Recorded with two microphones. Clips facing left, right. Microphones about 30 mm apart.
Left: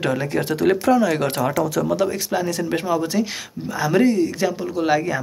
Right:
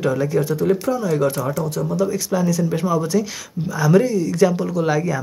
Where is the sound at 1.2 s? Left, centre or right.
Left.